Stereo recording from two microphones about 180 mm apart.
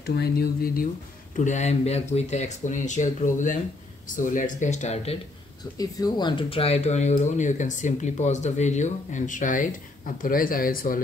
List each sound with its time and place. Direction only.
0.0 s speech: 60° left (ahead or behind)
1.3 s speech: 40° left (ahead or behind)
5.8 s speech: 20° left (ahead or behind); by 11.0 s 50° left (ahead or behind)